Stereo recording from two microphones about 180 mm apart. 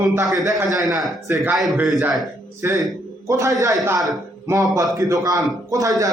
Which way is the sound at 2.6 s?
20° right (ahead or behind).